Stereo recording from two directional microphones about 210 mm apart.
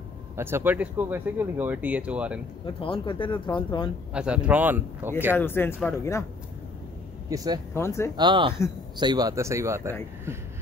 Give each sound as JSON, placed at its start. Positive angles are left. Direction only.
{"t": 0.4, "sound": "speech", "side_deg": -10}
{"t": 2.6, "sound": "speech", "side_deg": 25}
{"t": 4.1, "sound": "speech", "side_deg": -5}
{"t": 5.4, "sound": "speech", "side_deg": 10}
{"t": 7.2, "sound": "speech", "side_deg": -15}
{"t": 7.7, "sound": "speech", "side_deg": 10}
{"t": 8.2, "sound": "speech", "side_deg": -20}